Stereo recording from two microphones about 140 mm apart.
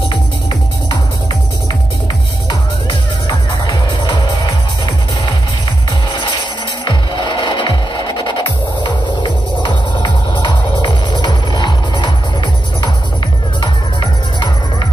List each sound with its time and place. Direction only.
2.9 s music: 30° left (ahead or behind)
6.8 s music: 35° left (ahead or behind)
13.6 s music: 35° left (ahead or behind)